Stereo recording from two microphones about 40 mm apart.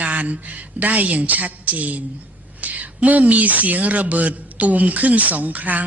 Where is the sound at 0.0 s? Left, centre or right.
Right.